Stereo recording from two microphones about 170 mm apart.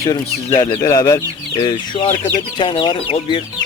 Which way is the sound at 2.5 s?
30° left (ahead or behind).